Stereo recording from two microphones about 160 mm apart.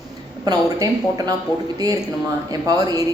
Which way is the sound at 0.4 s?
25° right (ahead or behind).